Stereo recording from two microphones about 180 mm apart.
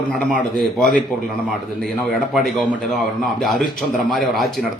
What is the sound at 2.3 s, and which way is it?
A man's voice, centre (ahead or behind).